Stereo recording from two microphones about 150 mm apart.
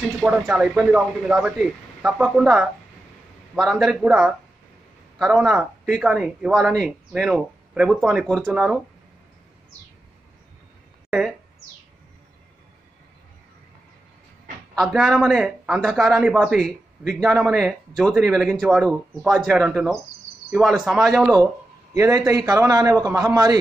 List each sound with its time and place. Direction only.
0.0 s speech: 5° right (ahead or behind)
11.1 s speech: 5° right (ahead or behind)
14.8 s speech: centre (ahead or behind)
21.9 s a man's voice: 20° right (ahead or behind)